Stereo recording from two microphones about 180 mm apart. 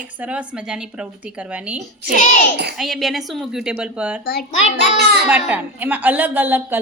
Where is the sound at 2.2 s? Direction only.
40° left (ahead or behind).